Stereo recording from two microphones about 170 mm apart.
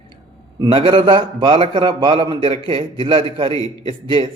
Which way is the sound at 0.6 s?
30° right (ahead or behind).